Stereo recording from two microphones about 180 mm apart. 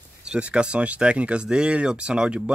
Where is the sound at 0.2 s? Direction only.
5° right (ahead or behind).